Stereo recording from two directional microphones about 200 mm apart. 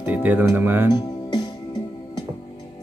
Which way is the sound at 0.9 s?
20° left (ahead or behind).